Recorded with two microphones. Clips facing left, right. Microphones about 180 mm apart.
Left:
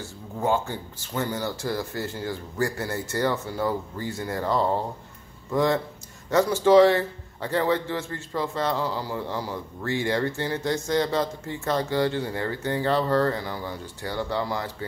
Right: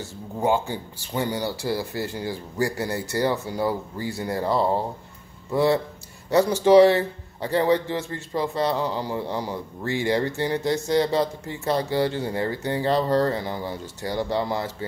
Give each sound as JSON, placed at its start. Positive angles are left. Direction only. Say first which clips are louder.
{"t": 0.4, "sound": "a man's voice", "louder": "right 2 dB", "side_deg": -15}